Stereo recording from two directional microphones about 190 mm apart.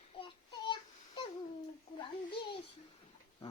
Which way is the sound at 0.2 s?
25° left (ahead or behind).